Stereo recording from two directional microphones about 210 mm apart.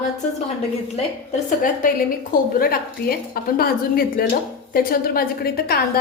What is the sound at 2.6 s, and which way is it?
A woman's voice, 45° left (ahead or behind).